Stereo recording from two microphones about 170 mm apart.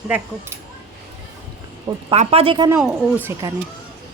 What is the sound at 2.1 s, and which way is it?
Speech, 40° right (ahead or behind).